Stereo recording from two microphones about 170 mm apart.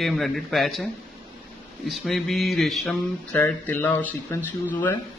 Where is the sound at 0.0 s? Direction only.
Centre (ahead or behind).